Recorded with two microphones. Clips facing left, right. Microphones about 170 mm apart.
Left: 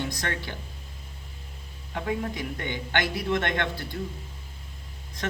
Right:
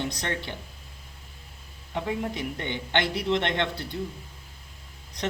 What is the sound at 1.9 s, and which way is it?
Speech, 20° right (ahead or behind).